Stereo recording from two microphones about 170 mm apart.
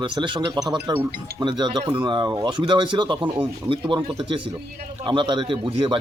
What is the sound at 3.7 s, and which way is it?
Speech, 30° right (ahead or behind).